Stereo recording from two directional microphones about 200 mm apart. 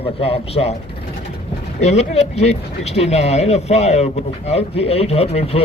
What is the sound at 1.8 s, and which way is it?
Speech, 30° left (ahead or behind).